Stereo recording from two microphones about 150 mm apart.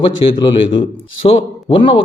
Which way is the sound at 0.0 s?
30° left (ahead or behind).